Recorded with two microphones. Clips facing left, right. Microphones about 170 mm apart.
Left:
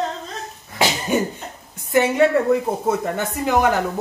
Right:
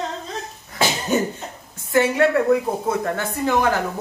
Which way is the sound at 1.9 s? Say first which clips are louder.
Left 1 dB; 20° left (ahead or behind).